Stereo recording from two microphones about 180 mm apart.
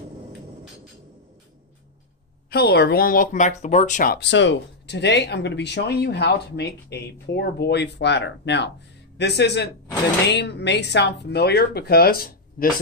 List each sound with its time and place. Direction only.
2.5 s speech: 65° left (ahead or behind)
4.3 s speech: 85° left; by 12.7 s 50° left (ahead or behind)